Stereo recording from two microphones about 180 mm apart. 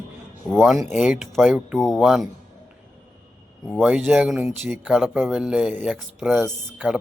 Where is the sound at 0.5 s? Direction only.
Centre (ahead or behind).